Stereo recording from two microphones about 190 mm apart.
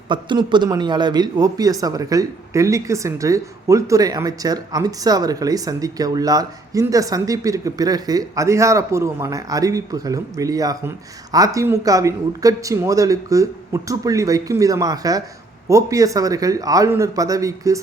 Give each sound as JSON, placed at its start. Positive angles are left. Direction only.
{"t": 0.1, "sound": "speech", "side_deg": -25}